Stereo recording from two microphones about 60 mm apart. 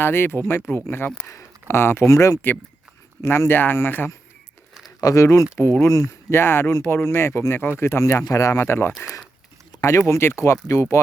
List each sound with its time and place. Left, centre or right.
0.0 s speech: left
1.3 s a sound: left
1.7 s speech: left
3.2 s speech: left
4.9 s speech: left
6.3 s speech: left
8.6 s speech: left
8.9 s speech: centre
10.1 s speech: left